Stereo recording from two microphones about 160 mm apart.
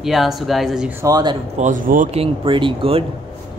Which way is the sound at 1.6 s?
55° right (ahead or behind).